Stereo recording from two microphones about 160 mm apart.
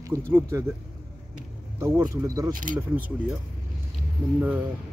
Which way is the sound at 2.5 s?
55° right (ahead or behind).